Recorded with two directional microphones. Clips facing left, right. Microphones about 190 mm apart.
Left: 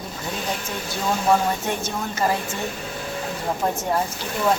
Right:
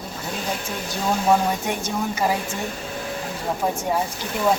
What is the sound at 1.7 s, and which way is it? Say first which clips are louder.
Speech: right 1 dB; 10° right (ahead or behind).